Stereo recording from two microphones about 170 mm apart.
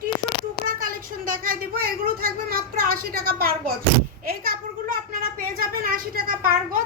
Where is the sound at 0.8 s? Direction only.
55° right (ahead or behind).